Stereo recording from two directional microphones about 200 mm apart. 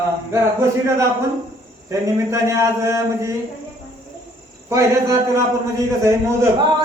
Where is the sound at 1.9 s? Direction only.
15° right (ahead or behind).